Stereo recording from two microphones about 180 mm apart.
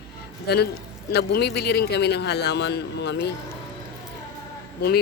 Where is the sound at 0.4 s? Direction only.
65° left (ahead or behind).